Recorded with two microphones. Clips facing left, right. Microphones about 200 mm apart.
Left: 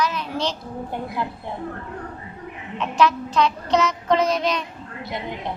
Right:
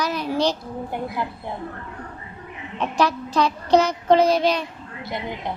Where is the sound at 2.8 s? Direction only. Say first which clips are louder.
Left 2 dB; 35° right (ahead or behind).